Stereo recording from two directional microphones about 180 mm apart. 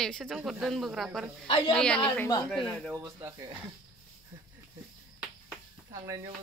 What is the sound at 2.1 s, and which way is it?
Speech, 20° left (ahead or behind).